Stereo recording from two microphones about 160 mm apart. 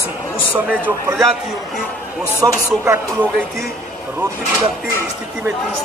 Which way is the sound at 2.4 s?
15° right (ahead or behind).